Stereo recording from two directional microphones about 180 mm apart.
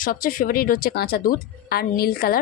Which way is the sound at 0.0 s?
50° left (ahead or behind).